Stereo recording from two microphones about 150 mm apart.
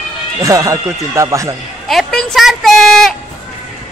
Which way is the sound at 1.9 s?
Centre (ahead or behind).